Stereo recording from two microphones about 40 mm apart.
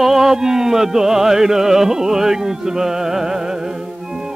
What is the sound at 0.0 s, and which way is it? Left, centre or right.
Music, centre.